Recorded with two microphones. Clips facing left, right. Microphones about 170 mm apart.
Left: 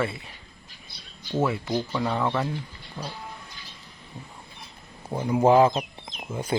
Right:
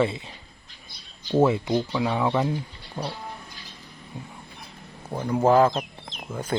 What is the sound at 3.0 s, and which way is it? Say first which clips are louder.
Bird: right 5 dB; 40° right (ahead or behind).